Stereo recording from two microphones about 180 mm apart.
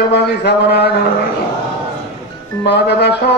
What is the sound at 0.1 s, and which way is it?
Speech, 65° left (ahead or behind).